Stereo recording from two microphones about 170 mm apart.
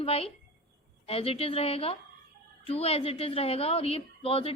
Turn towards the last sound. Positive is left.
turn(degrees=35)  # may be behind; listen again after turning